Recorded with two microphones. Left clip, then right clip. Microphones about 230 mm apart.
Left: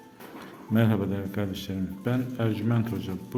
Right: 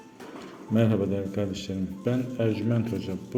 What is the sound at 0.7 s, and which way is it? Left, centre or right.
A man's voice, centre.